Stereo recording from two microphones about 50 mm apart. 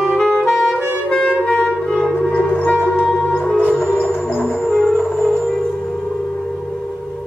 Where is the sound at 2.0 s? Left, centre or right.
Left.